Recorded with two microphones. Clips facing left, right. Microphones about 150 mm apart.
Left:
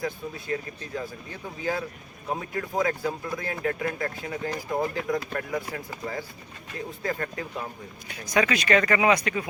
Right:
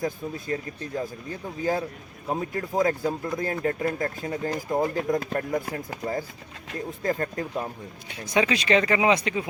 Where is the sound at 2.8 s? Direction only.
40° right (ahead or behind).